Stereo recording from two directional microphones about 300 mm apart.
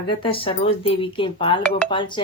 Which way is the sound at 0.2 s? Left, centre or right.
Centre.